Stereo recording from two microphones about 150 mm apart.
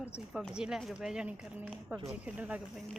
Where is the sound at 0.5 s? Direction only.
5° right (ahead or behind).